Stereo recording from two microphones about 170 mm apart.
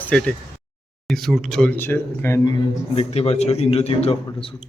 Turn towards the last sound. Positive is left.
turn(degrees=35)  # may be behind; listen again after turning